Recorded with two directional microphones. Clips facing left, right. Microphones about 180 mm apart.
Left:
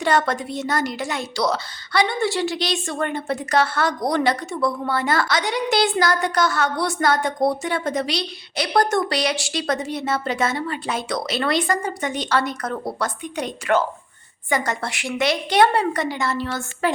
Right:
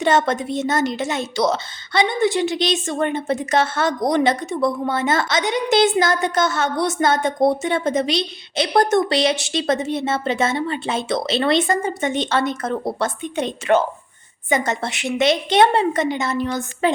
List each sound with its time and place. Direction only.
0.0 s a woman's voice: 20° right (ahead or behind)